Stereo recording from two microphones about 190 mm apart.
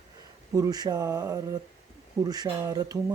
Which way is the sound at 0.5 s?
20° right (ahead or behind).